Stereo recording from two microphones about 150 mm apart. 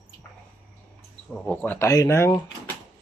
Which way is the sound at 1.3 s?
10° left (ahead or behind).